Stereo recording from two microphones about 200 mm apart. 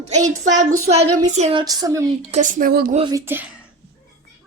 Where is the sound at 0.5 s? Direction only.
40° right (ahead or behind).